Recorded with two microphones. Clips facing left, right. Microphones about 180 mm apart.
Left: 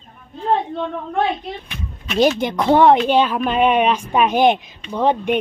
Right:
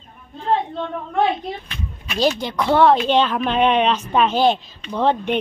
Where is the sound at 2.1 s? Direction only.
20° left (ahead or behind).